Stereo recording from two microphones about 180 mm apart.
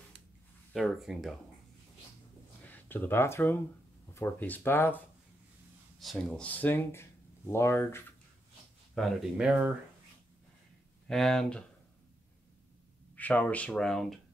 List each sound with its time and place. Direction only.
0.7 s speech: centre (ahead or behind)
2.7 s speech: 10° left (ahead or behind)
5.9 s speech: centre (ahead or behind)
8.9 s speech: centre (ahead or behind)
11.1 s speech: centre (ahead or behind)
13.1 s speech: 10° left (ahead or behind)